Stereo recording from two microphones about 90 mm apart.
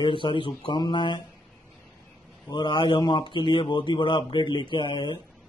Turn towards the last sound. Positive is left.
turn(degrees=60)  # may be behind; listen again after turning